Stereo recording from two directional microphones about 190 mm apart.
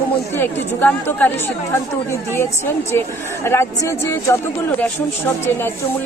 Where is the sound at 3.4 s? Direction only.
15° left (ahead or behind).